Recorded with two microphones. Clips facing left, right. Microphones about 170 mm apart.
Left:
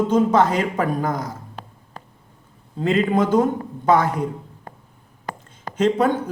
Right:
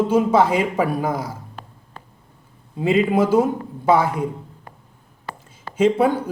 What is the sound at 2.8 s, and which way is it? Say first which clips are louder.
A man's voice: right 1 dB; 5° right (ahead or behind).